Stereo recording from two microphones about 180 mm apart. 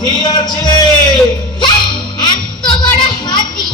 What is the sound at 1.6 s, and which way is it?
Music, 25° left (ahead or behind).